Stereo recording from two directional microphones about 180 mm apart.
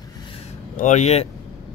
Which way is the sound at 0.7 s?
40° left (ahead or behind).